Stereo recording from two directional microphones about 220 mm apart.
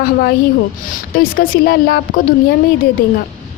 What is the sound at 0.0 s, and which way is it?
A woman's voice, 45° left (ahead or behind).